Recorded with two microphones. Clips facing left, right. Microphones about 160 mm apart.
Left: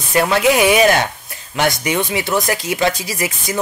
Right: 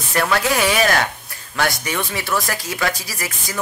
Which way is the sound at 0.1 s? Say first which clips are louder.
Left 5 dB; 20° left (ahead or behind).